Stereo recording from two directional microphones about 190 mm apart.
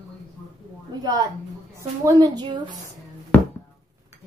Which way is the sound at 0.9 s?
20° right (ahead or behind).